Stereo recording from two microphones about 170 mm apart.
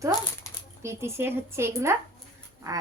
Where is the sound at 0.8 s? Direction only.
15° right (ahead or behind).